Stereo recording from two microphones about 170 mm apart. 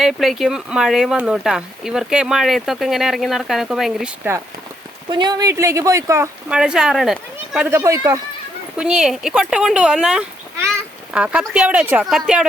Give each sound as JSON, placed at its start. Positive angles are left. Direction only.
{"t": 0.0, "sound": "speech", "side_deg": 0}
{"t": 5.0, "sound": "speech", "side_deg": -25}
{"t": 6.5, "sound": "speech", "side_deg": -5}
{"t": 8.7, "sound": "speech", "side_deg": -5}